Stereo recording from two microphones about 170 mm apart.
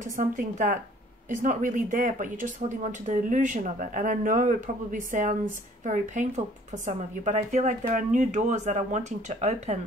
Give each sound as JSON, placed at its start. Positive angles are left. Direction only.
{"t": 0.0, "sound": "speech", "side_deg": -50}